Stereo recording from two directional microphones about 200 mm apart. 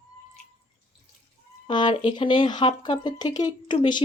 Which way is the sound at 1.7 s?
20° left (ahead or behind).